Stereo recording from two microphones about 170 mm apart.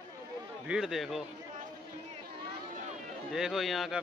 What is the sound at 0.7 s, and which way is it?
Speech, centre (ahead or behind).